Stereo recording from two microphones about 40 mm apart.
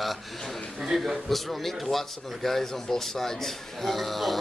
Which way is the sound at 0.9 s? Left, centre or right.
Centre.